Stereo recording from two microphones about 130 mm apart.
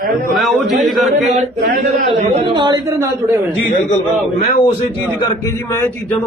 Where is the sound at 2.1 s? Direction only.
40° right (ahead or behind).